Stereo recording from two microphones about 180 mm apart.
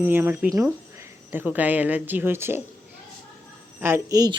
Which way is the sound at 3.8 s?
15° right (ahead or behind).